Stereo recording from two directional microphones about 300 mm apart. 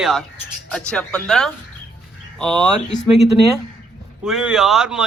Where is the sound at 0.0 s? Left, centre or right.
Centre.